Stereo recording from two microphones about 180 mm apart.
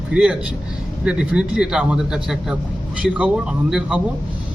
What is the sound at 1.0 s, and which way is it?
A man's voice, 5° right (ahead or behind).